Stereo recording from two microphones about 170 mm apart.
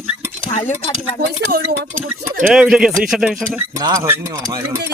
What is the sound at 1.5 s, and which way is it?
Speech, 60° right (ahead or behind).